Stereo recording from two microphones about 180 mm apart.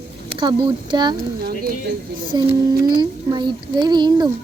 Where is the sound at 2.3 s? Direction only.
20° right (ahead or behind).